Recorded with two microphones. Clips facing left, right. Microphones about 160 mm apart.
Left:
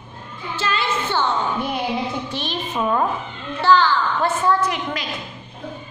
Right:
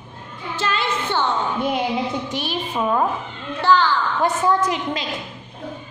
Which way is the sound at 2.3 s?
10° right (ahead or behind).